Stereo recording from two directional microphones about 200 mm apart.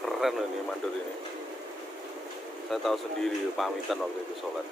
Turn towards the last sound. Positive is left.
turn(degrees=0)  # may be behind; listen again after turning